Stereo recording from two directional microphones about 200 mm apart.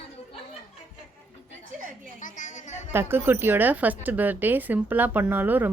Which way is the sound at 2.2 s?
40° left (ahead or behind).